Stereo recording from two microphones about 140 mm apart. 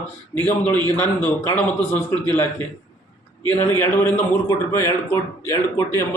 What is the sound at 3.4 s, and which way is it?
A man's voice, 15° left (ahead or behind).